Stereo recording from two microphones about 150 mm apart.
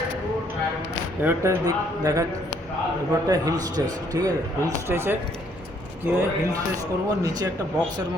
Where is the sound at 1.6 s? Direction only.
25° right (ahead or behind).